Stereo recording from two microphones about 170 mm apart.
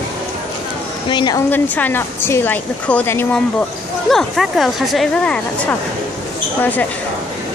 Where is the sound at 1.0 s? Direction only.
25° left (ahead or behind).